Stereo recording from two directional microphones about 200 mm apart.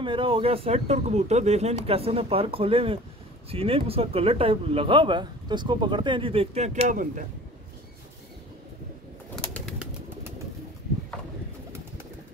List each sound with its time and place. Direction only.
0.0 s speech: 25° right (ahead or behind)
9.3 s bird: 5° left (ahead or behind)